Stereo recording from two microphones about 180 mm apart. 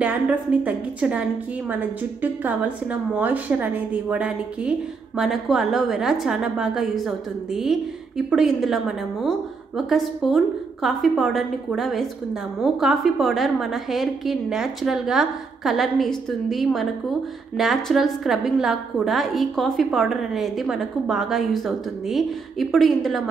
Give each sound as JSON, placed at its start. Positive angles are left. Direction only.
{"t": 0.0, "sound": "a woman's voice", "side_deg": -10}